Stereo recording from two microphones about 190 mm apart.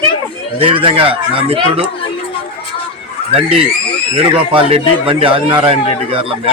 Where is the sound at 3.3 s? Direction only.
30° right (ahead or behind).